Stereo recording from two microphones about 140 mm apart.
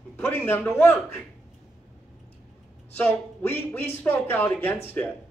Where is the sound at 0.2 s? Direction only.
15° left (ahead or behind).